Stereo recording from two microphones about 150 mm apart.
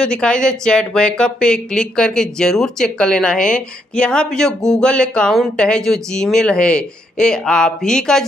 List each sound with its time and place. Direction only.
0.0 s speech: 5° left (ahead or behind)